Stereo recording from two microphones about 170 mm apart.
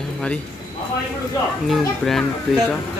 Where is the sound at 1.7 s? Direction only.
Centre (ahead or behind).